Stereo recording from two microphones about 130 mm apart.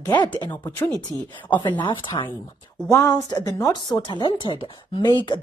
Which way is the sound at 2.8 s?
25° left (ahead or behind).